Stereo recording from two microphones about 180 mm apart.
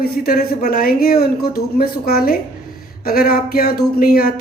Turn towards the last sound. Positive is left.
turn(degrees=55)  # may be behind; listen again after turning